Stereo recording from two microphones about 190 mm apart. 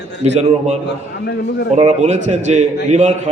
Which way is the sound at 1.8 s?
35° right (ahead or behind).